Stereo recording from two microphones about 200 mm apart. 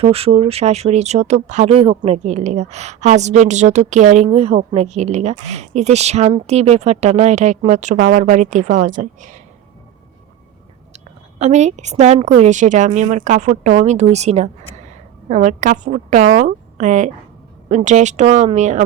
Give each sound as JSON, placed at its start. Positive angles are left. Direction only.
{"t": 0.0, "sound": "speech", "side_deg": -30}
{"t": 10.9, "sound": "speech", "side_deg": -35}